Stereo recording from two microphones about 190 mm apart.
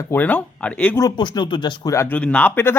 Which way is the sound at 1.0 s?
20° left (ahead or behind).